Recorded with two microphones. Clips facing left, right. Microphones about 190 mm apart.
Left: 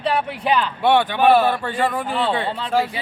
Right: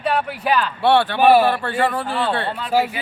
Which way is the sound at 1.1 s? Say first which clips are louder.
Right 1 dB; 10° right (ahead or behind).